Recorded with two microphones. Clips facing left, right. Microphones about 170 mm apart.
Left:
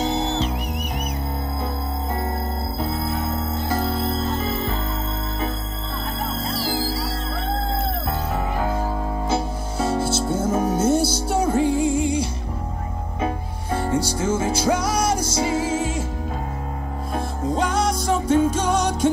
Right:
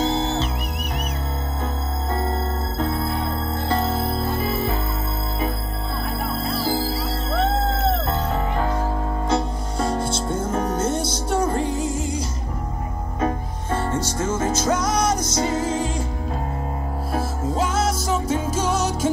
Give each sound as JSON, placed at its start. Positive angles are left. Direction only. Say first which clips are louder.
{"t": 4.0, "sound": "music", "louder": "even", "side_deg": -10}
{"t": 6.5, "sound": "music", "louder": "right 3 dB", "side_deg": 90}
{"t": 9.3, "sound": "music", "louder": "right 2 dB", "side_deg": 5}
{"t": 11.7, "sound": "music", "louder": "left 5 dB", "side_deg": 60}
{"t": 13.2, "sound": "music", "louder": "right 2 dB", "side_deg": 10}
{"t": 17.1, "sound": "music", "louder": "left 1 dB", "side_deg": -5}